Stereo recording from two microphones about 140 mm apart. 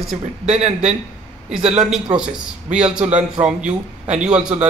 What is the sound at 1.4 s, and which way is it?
Speech, 5° right (ahead or behind).